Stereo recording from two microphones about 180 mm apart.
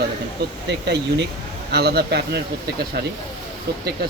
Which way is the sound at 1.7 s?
65° right (ahead or behind).